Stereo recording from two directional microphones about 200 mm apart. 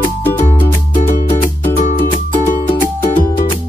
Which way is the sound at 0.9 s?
40° left (ahead or behind).